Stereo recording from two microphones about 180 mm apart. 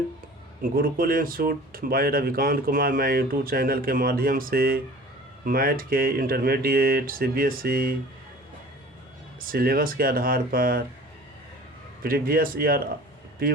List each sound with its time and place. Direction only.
0.6 s speech: 55° right (ahead or behind)
9.4 s speech: 55° right (ahead or behind)
12.0 s speech: 55° right (ahead or behind)